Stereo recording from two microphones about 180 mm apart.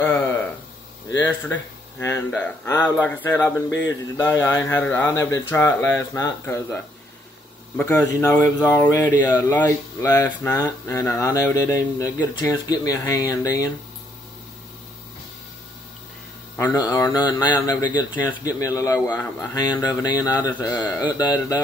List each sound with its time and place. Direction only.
0.0 s a sound: 10° left (ahead or behind)
1.1 s speech: 10° left (ahead or behind)
16.5 s speech: 20° left (ahead or behind)